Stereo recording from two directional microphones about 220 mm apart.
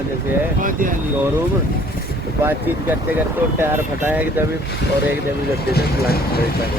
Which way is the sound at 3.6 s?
10° right (ahead or behind).